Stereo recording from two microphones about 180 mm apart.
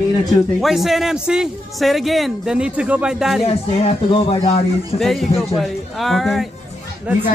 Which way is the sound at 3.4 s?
35° left (ahead or behind).